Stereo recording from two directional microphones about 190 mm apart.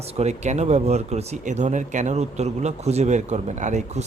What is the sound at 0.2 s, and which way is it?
Speech, 35° right (ahead or behind).